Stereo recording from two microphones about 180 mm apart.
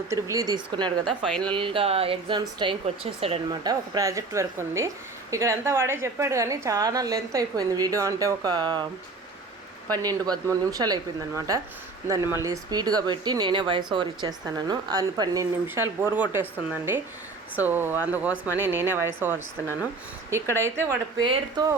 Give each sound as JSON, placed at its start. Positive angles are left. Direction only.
{"t": 0.1, "sound": "speech", "side_deg": -20}
{"t": 1.0, "sound": "speech", "side_deg": 0}
{"t": 1.5, "sound": "a woman's voice", "side_deg": -30}
{"t": 9.9, "sound": "a woman's voice", "side_deg": -20}
{"t": 20.6, "sound": "a woman's voice", "side_deg": -15}
{"t": 21.2, "sound": "speech", "side_deg": -25}